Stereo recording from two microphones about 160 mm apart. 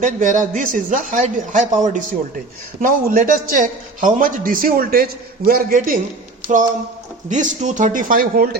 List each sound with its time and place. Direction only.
0.0 s a man's voice: 55° right (ahead or behind)
7.3 s a man's voice: 50° right (ahead or behind)